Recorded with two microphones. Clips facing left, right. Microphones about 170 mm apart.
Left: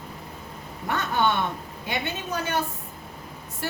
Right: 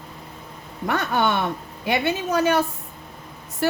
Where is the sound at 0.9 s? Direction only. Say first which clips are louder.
Right 3 dB; 75° right (ahead or behind).